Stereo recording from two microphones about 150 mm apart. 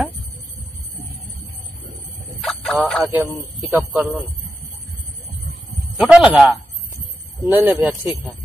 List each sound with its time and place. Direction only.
2.4 s speech: centre (ahead or behind)
5.9 s a sound: 5° right (ahead or behind)
7.5 s speech: 10° right (ahead or behind)